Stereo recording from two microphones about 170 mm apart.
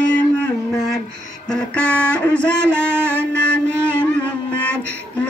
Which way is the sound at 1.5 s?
5° left (ahead or behind).